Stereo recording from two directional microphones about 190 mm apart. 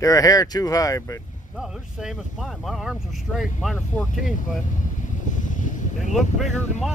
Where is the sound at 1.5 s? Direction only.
Centre (ahead or behind).